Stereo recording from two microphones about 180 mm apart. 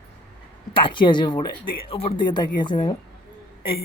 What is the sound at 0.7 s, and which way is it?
Speech, 30° left (ahead or behind).